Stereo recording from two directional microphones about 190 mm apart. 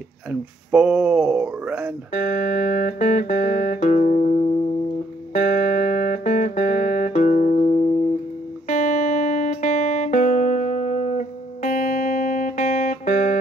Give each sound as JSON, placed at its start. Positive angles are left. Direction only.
{"t": 0.3, "sound": "speech", "side_deg": -10}
{"t": 2.1, "sound": "music", "side_deg": 40}